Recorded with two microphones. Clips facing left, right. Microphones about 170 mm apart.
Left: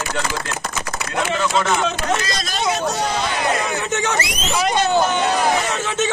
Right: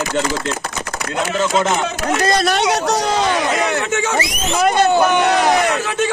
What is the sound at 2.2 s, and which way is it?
Speech, 65° right (ahead or behind).